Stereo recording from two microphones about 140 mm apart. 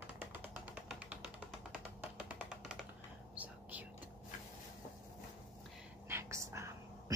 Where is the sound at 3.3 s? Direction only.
10° right (ahead or behind).